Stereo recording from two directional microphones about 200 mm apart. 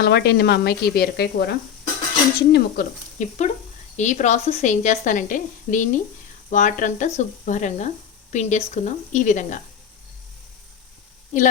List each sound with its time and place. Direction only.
0.0 s speech: 55° left (ahead or behind)
3.2 s a woman's voice: 35° left (ahead or behind)
11.3 s a woman's voice: 35° left (ahead or behind)